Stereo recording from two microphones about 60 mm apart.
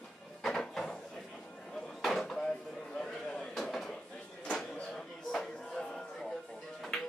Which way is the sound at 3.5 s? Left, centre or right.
Centre.